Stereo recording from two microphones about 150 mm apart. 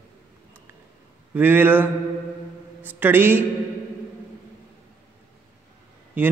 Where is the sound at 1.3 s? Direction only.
15° right (ahead or behind).